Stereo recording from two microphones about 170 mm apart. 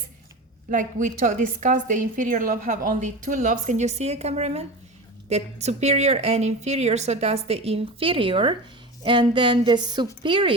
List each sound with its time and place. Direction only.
0.7 s a woman's voice: 50° right (ahead or behind); by 10.5 s 30° right (ahead or behind)